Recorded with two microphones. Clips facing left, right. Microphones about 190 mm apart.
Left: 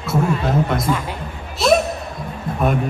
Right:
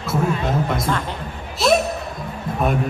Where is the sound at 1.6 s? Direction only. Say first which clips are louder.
Left 2 dB; centre (ahead or behind).